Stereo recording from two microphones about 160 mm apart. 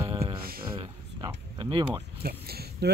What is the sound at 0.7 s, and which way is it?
Speech, 30° right (ahead or behind).